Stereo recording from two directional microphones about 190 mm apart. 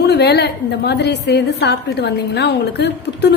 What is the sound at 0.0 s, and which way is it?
A woman's voice, 60° left (ahead or behind).